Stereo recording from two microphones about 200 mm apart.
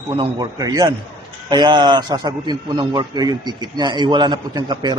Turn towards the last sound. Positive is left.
turn(degrees=-20)  # may be behind; listen again after turning